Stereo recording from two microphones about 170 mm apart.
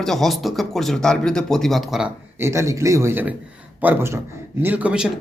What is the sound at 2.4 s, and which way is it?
Speech, 15° right (ahead or behind).